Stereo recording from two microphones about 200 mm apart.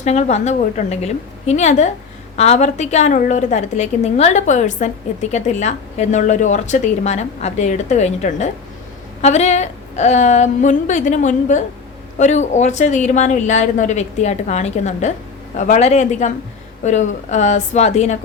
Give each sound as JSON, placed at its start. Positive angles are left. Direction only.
{"t": 0.0, "sound": "a woman's voice", "side_deg": 35}